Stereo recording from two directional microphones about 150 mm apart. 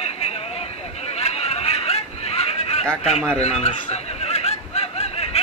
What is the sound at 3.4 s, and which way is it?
Snicker, 45° left (ahead or behind).